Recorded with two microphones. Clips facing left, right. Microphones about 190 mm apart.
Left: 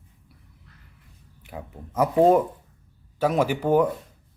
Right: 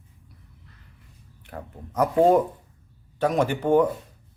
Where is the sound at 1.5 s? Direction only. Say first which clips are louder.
Even; 5° left (ahead or behind).